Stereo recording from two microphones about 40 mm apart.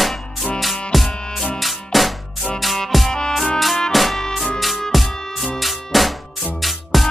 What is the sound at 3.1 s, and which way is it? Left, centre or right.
Music, centre.